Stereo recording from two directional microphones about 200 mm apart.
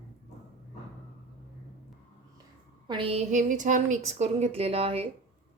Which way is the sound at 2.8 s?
25° right (ahead or behind).